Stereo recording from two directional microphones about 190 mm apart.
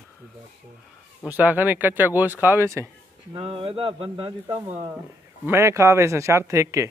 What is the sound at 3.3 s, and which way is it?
Speech, 30° right (ahead or behind).